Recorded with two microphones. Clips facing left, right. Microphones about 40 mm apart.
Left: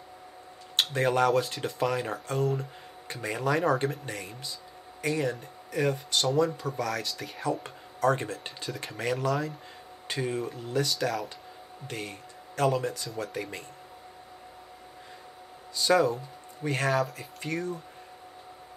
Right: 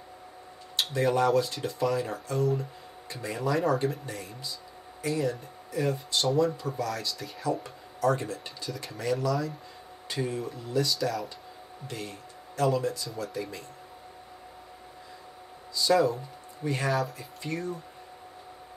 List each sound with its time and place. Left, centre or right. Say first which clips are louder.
0.7 s speech: left 1 dB; left
15.7 s speech: even; left
16.6 s speech: left 1 dB; left
16.9 s speech: left 1 dB; centre
17.4 s speech: left 1 dB; left